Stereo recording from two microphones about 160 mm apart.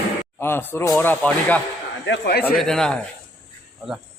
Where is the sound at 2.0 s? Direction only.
90° left.